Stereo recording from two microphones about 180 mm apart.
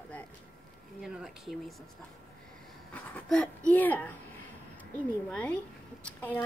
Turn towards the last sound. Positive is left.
turn(degrees=10)  # may be behind; listen again after turning